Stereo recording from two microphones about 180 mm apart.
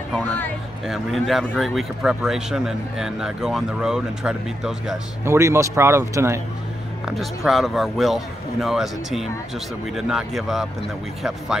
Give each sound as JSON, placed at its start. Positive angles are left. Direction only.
{"t": 0.8, "sound": "speech", "side_deg": 0}
{"t": 5.2, "sound": "speech", "side_deg": -15}
{"t": 7.1, "sound": "speech", "side_deg": 0}